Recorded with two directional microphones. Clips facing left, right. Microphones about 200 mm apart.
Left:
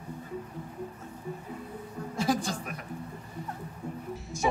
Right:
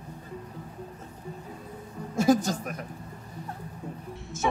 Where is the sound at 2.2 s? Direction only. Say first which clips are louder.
Right 7 dB; 45° right (ahead or behind).